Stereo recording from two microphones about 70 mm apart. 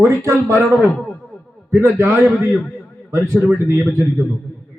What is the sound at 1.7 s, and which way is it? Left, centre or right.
Speech, right.